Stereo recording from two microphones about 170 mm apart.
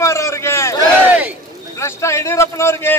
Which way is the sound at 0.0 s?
15° left (ahead or behind).